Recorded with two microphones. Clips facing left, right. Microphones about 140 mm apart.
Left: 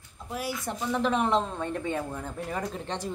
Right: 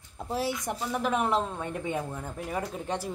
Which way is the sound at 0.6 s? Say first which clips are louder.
Left 2 dB; 10° right (ahead or behind).